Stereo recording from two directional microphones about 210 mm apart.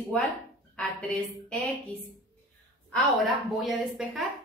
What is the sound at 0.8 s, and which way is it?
Speech, centre (ahead or behind).